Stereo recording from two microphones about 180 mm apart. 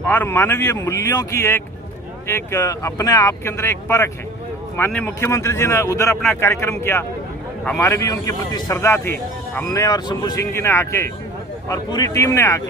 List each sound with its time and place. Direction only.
0.0 s speech: 10° left (ahead or behind)